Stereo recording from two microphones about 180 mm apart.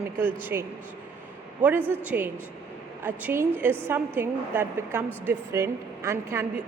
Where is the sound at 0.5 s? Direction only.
15° right (ahead or behind).